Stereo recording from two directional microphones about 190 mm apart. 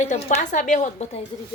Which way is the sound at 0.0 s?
40° left (ahead or behind).